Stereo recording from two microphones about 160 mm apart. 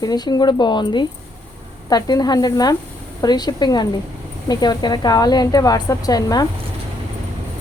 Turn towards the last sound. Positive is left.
turn(degrees=25)  # may be behind; listen again after turning